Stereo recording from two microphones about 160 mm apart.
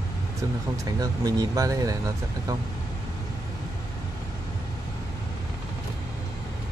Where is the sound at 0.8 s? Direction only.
25° right (ahead or behind).